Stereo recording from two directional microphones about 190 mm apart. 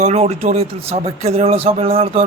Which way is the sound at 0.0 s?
35° right (ahead or behind).